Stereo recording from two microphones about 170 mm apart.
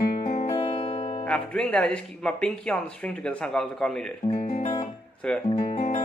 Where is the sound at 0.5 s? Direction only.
35° left (ahead or behind).